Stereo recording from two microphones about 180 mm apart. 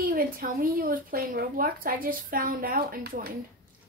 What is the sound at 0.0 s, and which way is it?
A child's voice, 50° right (ahead or behind).